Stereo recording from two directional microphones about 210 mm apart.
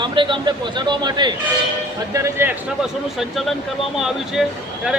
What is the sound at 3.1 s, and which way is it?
Speech, centre (ahead or behind).